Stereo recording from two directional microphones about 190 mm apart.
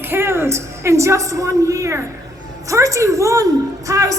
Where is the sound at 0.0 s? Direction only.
10° right (ahead or behind).